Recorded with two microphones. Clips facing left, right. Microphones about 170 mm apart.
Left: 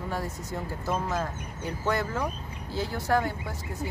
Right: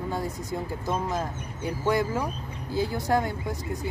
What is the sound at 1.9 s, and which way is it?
Speech, 15° right (ahead or behind).